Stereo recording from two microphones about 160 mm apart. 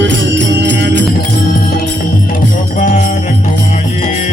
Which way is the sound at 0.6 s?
90° right.